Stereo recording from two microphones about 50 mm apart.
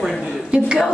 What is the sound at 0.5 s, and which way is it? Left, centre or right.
Speech, centre.